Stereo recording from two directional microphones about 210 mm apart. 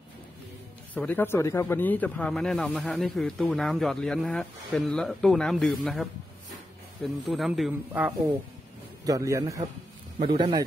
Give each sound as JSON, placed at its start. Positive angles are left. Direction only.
{"t": 0.9, "sound": "speech", "side_deg": 10}
{"t": 7.2, "sound": "speech", "side_deg": 0}
{"t": 9.0, "sound": "a man's voice", "side_deg": -15}
{"t": 10.1, "sound": "a man's voice", "side_deg": -25}